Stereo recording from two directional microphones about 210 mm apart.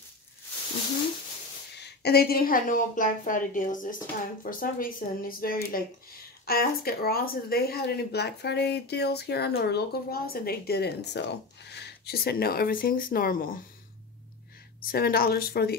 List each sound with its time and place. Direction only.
1.8 s a woman's voice: 50° left (ahead or behind)
14.8 s a woman's voice: 45° left (ahead or behind)